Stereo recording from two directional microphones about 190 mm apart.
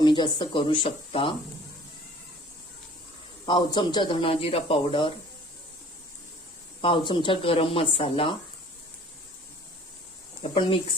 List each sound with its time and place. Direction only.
0.0 s speech: 25° left (ahead or behind)
3.4 s speech: 25° left (ahead or behind)
6.8 s speech: 25° left (ahead or behind)
10.4 s speech: 30° left (ahead or behind)